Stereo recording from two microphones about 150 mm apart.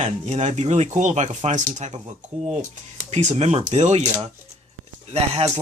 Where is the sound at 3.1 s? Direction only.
45° right (ahead or behind).